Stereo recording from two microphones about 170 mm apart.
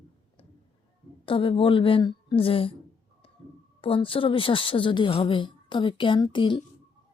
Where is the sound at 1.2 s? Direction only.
30° left (ahead or behind).